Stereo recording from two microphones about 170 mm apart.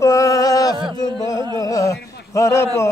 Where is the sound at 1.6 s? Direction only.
20° left (ahead or behind).